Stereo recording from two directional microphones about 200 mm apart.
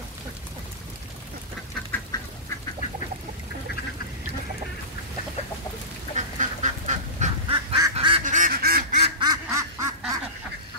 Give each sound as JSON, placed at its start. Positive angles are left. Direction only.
{"t": 6.1, "sound": "duck", "side_deg": -35}
{"t": 7.5, "sound": "duck", "side_deg": -20}
{"t": 8.2, "sound": "duck", "side_deg": -40}
{"t": 9.0, "sound": "quack", "side_deg": -20}